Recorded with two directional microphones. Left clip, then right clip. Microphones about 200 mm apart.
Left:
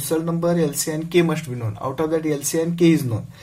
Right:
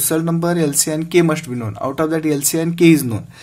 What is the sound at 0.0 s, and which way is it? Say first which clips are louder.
Speech: right 3 dB; 50° right (ahead or behind).